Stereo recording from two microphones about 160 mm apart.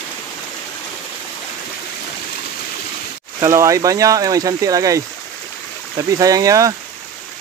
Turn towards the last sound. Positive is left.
turn(degrees=-20)  # may be behind; listen again after turning